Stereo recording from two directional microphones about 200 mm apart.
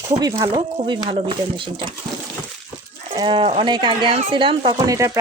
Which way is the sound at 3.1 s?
25° right (ahead or behind).